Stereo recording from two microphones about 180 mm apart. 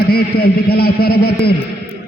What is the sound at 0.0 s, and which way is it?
A man's voice, 60° left (ahead or behind).